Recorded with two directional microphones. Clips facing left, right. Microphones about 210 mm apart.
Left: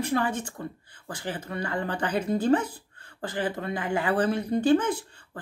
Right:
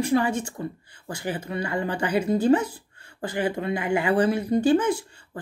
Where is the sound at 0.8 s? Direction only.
55° left (ahead or behind).